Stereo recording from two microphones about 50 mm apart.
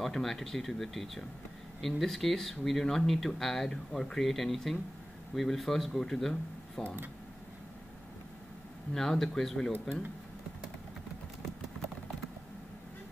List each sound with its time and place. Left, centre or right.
0.0 s speech: centre
6.8 s speech: centre
8.9 s speech: centre